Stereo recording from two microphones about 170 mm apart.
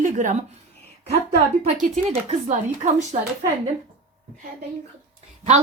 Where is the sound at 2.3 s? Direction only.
40° right (ahead or behind).